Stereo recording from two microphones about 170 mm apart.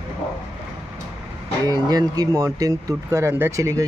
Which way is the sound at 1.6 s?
25° right (ahead or behind).